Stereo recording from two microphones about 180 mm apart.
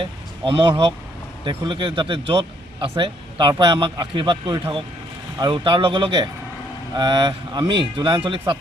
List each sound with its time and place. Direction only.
0.0 s a man's voice: 30° right (ahead or behind)